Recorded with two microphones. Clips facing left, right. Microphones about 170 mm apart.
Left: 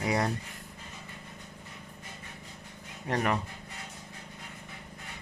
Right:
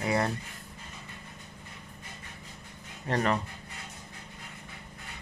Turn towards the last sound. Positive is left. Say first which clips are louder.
# right 1 dB
turn(degrees=10)  # may be behind; listen again after turning